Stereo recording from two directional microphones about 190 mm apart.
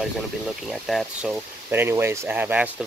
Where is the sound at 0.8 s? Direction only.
Centre (ahead or behind).